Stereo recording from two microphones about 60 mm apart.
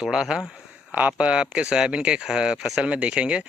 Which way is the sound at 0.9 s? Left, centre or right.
Right.